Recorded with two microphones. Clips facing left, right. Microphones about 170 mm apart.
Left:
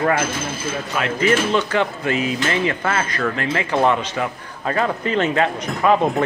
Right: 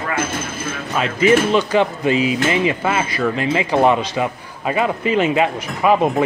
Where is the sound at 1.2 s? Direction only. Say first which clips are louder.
Right 5 dB; 15° right (ahead or behind).